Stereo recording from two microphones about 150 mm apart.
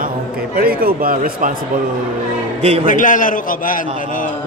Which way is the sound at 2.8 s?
60° left (ahead or behind).